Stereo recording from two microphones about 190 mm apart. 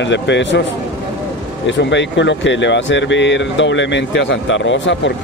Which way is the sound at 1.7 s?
70° left (ahead or behind).